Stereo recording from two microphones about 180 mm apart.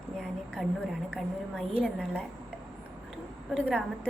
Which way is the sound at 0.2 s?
Centre (ahead or behind).